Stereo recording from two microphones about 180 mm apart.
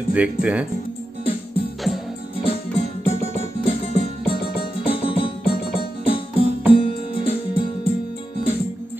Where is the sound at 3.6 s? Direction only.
30° left (ahead or behind).